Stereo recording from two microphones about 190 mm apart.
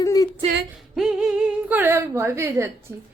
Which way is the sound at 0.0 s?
20° left (ahead or behind).